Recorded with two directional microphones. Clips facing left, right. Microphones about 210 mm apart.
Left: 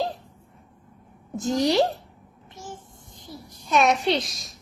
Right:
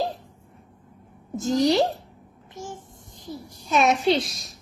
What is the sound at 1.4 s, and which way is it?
Speech, centre (ahead or behind).